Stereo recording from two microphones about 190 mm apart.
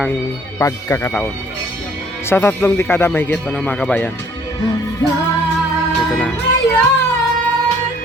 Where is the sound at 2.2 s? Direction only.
15° left (ahead or behind).